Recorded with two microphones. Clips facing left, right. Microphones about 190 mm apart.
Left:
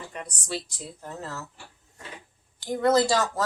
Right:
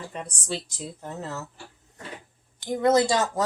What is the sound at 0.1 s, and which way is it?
Speech, 25° right (ahead or behind).